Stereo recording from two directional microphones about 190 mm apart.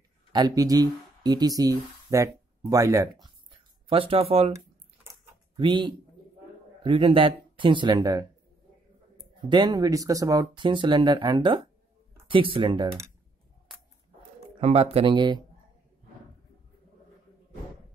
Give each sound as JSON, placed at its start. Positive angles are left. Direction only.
{"t": 0.3, "sound": "speech", "side_deg": -20}
{"t": 3.9, "sound": "speech", "side_deg": -30}
{"t": 5.6, "sound": "speech", "side_deg": -25}
{"t": 9.5, "sound": "speech", "side_deg": -20}
{"t": 14.6, "sound": "speech", "side_deg": -35}